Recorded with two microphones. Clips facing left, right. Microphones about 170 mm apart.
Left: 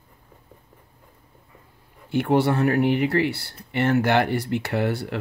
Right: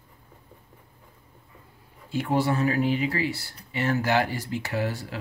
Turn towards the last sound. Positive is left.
turn(degrees=65)  # may be behind; listen again after turning